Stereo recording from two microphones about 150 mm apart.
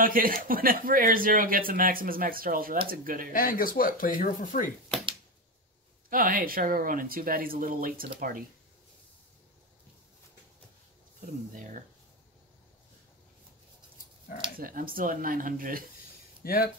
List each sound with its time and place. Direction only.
0.0 s speech: 70° right (ahead or behind)
3.3 s speech: 70° left (ahead or behind)
6.0 s speech: 65° right (ahead or behind)
11.5 s speech: 60° right (ahead or behind)
14.6 s speech: 70° right (ahead or behind)
16.4 s speech: 80° left